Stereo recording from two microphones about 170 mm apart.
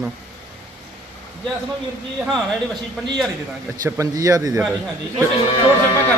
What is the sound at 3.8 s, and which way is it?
Speech, 20° right (ahead or behind).